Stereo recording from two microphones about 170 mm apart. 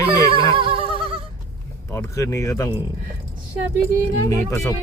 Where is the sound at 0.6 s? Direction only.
30° right (ahead or behind).